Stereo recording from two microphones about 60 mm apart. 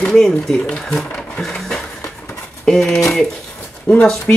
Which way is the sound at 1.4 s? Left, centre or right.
Centre.